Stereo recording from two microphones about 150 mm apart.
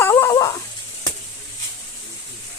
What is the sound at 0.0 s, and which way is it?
Dog, 20° left (ahead or behind).